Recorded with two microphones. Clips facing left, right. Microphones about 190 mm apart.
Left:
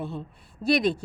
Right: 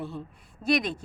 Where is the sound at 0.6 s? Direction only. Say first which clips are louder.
Left 3 dB; 35° left (ahead or behind).